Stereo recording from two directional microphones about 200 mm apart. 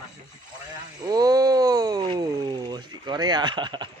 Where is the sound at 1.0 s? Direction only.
20° right (ahead or behind).